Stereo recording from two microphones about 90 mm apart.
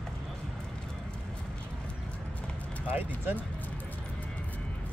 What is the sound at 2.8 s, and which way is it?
Speech, 20° right (ahead or behind).